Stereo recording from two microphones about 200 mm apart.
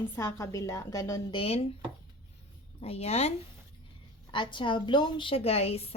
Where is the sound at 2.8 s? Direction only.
30° left (ahead or behind).